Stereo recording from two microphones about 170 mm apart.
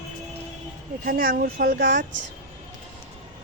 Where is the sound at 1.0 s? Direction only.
55° right (ahead or behind).